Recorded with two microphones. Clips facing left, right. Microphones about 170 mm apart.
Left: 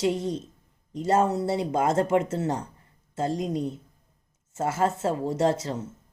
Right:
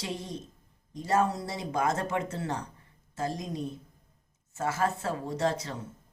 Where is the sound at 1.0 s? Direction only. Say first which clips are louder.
Left 5 dB; 25° left (ahead or behind).